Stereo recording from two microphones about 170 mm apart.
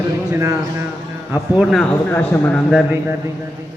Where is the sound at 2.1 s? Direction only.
10° left (ahead or behind).